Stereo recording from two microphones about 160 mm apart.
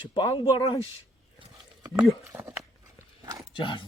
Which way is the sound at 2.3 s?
10° right (ahead or behind).